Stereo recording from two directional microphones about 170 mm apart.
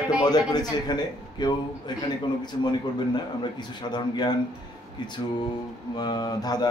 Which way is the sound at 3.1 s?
25° left (ahead or behind).